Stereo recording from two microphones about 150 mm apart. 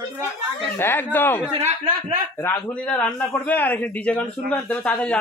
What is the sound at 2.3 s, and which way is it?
A man's voice, 15° left (ahead or behind).